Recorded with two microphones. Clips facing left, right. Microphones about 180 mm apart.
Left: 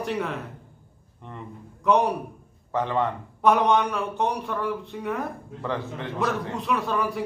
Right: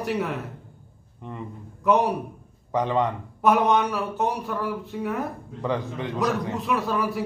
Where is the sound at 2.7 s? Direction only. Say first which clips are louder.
Right 2 dB; 15° right (ahead or behind).